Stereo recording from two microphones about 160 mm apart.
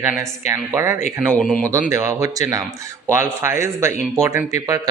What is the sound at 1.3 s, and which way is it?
Speech, 5° left (ahead or behind).